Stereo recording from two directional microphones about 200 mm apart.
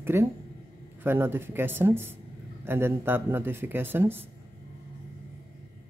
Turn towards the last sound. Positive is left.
turn(degrees=-10)  # may be behind; listen again after turning